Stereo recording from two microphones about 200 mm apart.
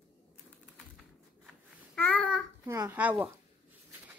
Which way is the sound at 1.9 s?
10° left (ahead or behind).